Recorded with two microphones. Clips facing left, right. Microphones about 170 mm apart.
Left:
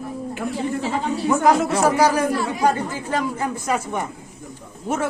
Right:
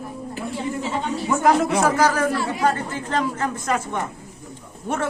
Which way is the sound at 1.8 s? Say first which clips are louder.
Left 1 dB; 15° left (ahead or behind).